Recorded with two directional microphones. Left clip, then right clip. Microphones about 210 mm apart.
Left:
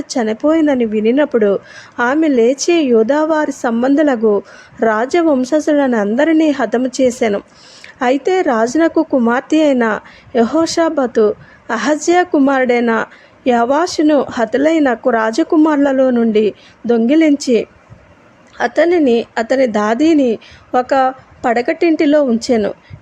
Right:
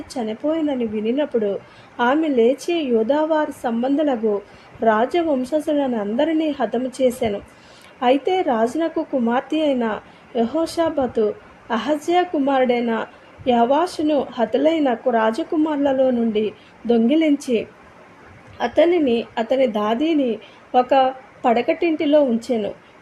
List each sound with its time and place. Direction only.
0.1 s a woman's voice: 25° left (ahead or behind)